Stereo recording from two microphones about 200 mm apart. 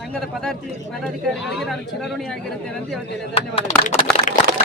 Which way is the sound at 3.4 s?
30° left (ahead or behind).